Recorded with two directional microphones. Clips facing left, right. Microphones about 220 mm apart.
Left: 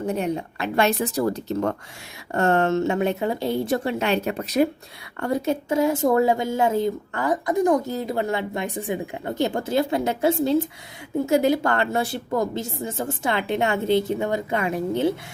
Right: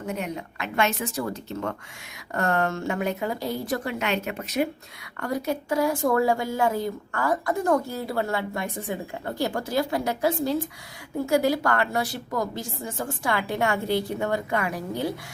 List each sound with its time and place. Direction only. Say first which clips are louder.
0.0 s speech: left 6 dB; 30° left (ahead or behind)
2.3 s a woman's voice: left 5 dB; 25° left (ahead or behind)
5.2 s a woman's voice: left 4 dB; 25° left (ahead or behind)